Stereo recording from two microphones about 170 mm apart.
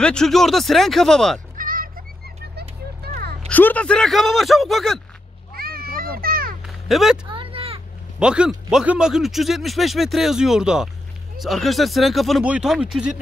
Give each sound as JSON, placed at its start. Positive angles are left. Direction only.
{"t": 0.0, "sound": "speech", "side_deg": 5}
{"t": 1.6, "sound": "fowl", "side_deg": -55}
{"t": 3.4, "sound": "speech", "side_deg": 10}
{"t": 5.5, "sound": "children playing", "side_deg": -60}
{"t": 6.6, "sound": "a sound", "side_deg": 0}
{"t": 7.2, "sound": "a sound", "side_deg": -30}
{"t": 8.2, "sound": "speech", "side_deg": -5}